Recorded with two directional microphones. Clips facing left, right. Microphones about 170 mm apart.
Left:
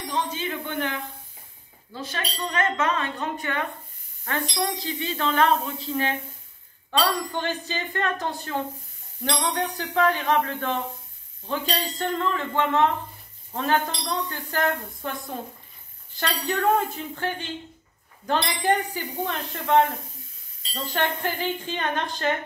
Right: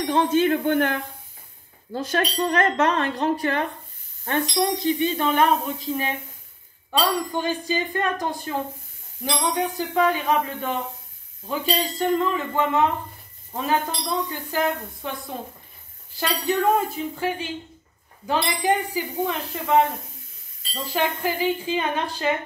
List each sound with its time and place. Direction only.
0.0 s speech: 55° right (ahead or behind); by 3.6 s 35° right (ahead or behind)
4.2 s a woman's voice: 25° right (ahead or behind); by 22.4 s 5° right (ahead or behind)